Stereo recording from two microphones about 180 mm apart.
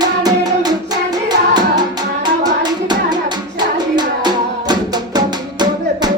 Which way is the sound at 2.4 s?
25° right (ahead or behind).